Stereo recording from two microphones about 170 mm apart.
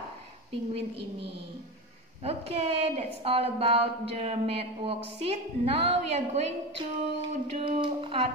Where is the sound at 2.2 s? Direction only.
35° right (ahead or behind).